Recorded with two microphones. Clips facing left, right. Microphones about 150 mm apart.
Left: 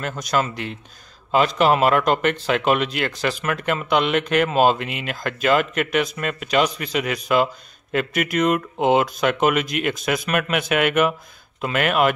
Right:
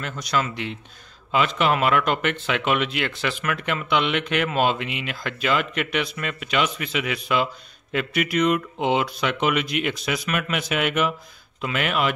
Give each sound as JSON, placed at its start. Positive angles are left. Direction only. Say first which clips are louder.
{"t": 0.0, "sound": "speech", "louder": "left 3 dB", "side_deg": 45}